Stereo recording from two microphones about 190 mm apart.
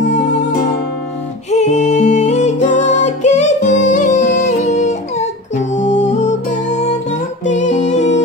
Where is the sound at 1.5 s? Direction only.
35° left (ahead or behind).